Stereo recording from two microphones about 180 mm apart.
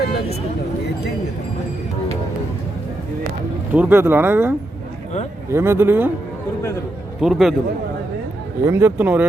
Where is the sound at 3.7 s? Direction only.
10° right (ahead or behind).